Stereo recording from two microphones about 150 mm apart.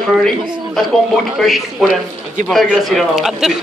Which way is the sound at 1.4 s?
Centre (ahead or behind).